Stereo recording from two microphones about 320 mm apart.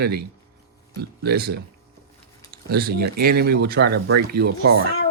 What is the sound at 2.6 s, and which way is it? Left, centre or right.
Speech, right.